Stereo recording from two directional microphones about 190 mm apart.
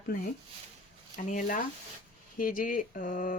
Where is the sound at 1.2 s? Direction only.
40° left (ahead or behind).